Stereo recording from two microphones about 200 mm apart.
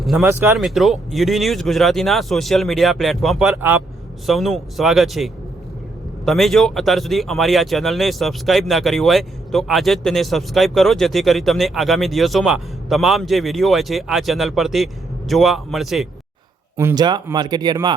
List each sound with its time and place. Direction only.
0.2 s speech: 10° right (ahead or behind)
0.6 s speech: centre (ahead or behind)
16.7 s speech: 15° right (ahead or behind)